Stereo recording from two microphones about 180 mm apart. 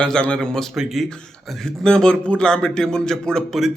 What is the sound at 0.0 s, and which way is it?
A man's voice, 5° left (ahead or behind).